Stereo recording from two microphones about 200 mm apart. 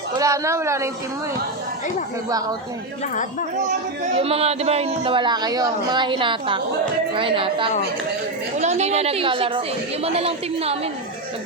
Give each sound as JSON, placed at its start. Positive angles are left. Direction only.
{"t": 0.2, "sound": "a woman's voice", "side_deg": -15}
{"t": 4.2, "sound": "a woman's voice", "side_deg": -30}